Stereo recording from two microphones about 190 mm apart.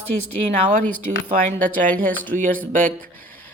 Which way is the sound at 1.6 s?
45° right (ahead or behind).